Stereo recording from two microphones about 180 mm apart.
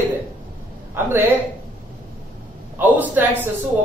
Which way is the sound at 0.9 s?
10° right (ahead or behind).